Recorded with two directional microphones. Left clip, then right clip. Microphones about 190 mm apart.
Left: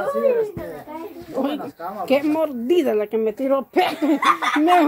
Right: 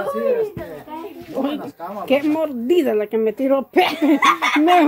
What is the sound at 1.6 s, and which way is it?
Speech, centre (ahead or behind).